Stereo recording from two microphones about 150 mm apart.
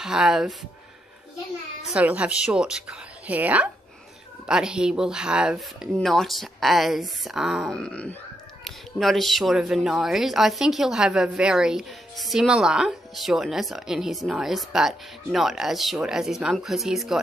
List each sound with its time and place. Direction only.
0.0 s speech: 5° right (ahead or behind)
1.9 s speech: 10° right (ahead or behind)